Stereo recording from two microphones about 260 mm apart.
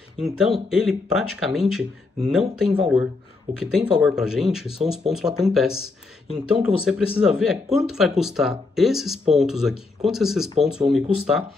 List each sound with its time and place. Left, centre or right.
0.2 s speech: centre